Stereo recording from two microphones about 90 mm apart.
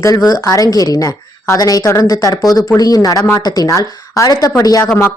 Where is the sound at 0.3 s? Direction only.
45° left (ahead or behind).